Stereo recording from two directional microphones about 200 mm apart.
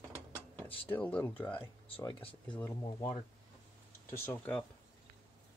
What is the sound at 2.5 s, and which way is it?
Speech, 10° left (ahead or behind).